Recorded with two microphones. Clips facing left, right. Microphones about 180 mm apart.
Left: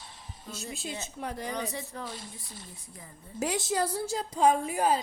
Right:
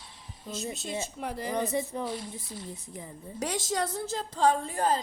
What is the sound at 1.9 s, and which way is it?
Speech, 20° right (ahead or behind).